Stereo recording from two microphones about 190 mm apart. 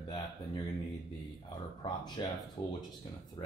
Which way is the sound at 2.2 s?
25° left (ahead or behind).